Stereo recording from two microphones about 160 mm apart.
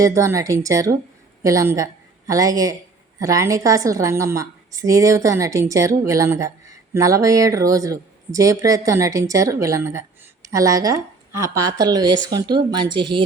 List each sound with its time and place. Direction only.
0.0 s a woman's voice: 20° right (ahead or behind)